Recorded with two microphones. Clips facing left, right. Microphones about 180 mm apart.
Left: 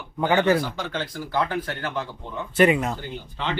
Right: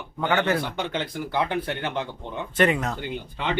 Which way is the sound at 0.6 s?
20° right (ahead or behind).